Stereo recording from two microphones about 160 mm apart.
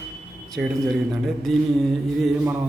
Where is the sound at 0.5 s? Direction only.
Centre (ahead or behind).